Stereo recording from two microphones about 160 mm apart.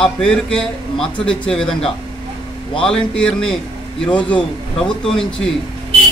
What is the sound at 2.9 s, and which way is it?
Speech, 5° left (ahead or behind).